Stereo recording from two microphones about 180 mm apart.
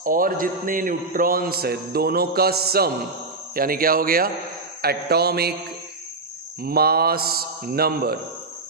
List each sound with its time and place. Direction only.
0.0 s a man's voice: 50° right (ahead or behind)
6.6 s a man's voice: 55° right (ahead or behind)